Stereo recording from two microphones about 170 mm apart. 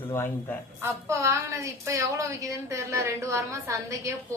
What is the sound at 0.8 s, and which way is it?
A woman's voice, 15° right (ahead or behind).